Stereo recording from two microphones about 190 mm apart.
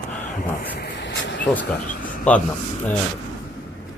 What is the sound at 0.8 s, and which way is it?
Vehicle, 70° left (ahead or behind).